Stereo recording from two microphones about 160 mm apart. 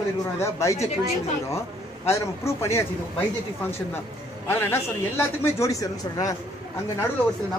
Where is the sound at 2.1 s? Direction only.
15° left (ahead or behind).